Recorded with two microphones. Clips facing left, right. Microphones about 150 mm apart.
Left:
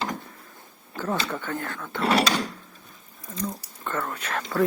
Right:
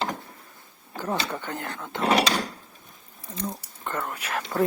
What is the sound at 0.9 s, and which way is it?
Speech, 15° right (ahead or behind).